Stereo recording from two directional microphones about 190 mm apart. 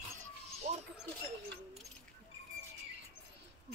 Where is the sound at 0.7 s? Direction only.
35° right (ahead or behind).